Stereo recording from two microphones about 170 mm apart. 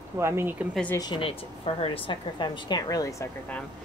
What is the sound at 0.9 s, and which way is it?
A woman's voice, 25° left (ahead or behind).